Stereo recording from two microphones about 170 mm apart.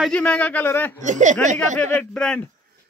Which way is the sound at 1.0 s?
45° right (ahead or behind).